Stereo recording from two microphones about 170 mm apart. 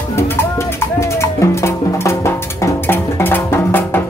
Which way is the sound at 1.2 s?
15° left (ahead or behind).